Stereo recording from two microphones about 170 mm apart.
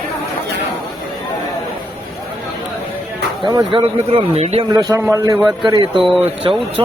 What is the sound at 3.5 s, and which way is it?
Speech, 25° right (ahead or behind).